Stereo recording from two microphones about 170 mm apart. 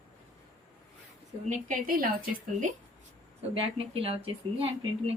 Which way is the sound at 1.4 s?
50° right (ahead or behind).